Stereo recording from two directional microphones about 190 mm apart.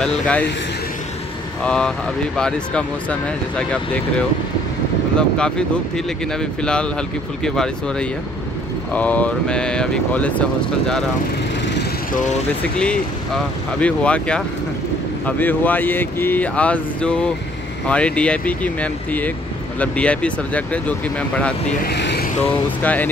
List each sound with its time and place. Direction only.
0.0 s speech: 5° left (ahead or behind)
1.6 s speech: 5° left (ahead or behind)
5.1 s speech: 5° left (ahead or behind)
12.7 s speech: 5° left (ahead or behind)
21.8 s vehicle: 60° left (ahead or behind)
22.4 s speech: 10° left (ahead or behind)